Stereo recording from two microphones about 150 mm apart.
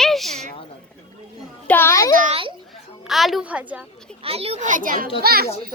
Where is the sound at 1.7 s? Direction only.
15° left (ahead or behind).